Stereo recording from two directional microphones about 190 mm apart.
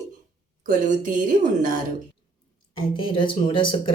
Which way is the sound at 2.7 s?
25° left (ahead or behind).